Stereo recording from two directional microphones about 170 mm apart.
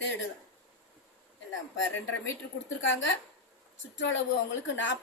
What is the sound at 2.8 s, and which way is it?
Speech, 90° left.